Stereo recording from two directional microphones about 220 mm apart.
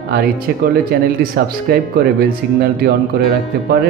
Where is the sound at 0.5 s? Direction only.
45° right (ahead or behind).